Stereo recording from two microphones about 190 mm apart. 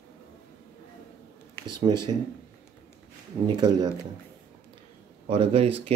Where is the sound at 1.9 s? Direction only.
25° right (ahead or behind).